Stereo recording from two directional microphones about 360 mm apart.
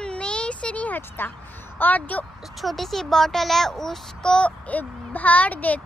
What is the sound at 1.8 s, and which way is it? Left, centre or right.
Speech, centre.